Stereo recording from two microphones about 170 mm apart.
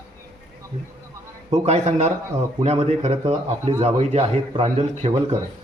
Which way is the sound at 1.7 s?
40° right (ahead or behind).